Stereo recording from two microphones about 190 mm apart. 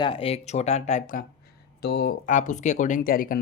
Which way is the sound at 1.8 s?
55° left (ahead or behind).